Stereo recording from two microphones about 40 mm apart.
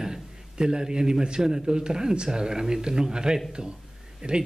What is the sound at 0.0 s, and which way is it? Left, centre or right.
A man's voice, centre.